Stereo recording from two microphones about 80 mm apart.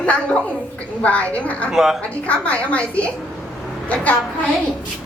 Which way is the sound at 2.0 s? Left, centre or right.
Centre.